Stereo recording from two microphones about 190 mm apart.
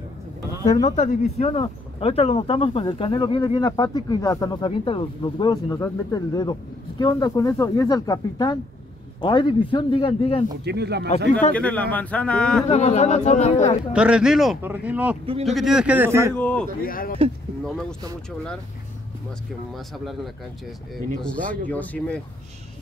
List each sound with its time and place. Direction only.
0.8 s speech: 40° left (ahead or behind)
10.6 s speech: 60° right (ahead or behind)
11.5 s speech: 5° left (ahead or behind)
12.6 s speech: 35° left (ahead or behind)
13.9 s speech: 5° right (ahead or behind)
16.3 s speech: 10° left (ahead or behind)
16.8 s speech: 50° left (ahead or behind)
19.7 s speech: centre (ahead or behind)